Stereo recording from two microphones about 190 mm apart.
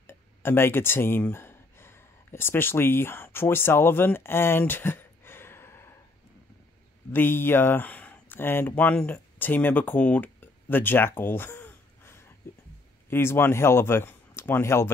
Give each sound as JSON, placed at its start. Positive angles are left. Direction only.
{"t": 0.0, "sound": "speech", "side_deg": 10}
{"t": 7.1, "sound": "speech", "side_deg": 10}